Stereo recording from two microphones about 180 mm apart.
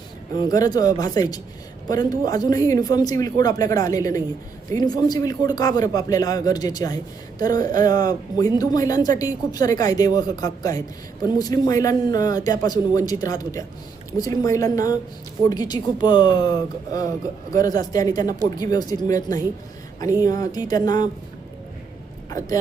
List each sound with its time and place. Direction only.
0.3 s speech: 20° left (ahead or behind)